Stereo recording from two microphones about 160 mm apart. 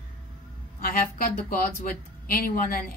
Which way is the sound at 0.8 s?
60° left (ahead or behind).